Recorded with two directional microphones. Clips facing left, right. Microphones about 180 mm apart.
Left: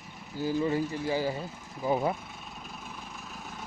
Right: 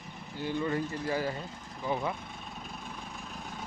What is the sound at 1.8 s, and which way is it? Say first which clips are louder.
Speech: left 5 dB; 40° left (ahead or behind).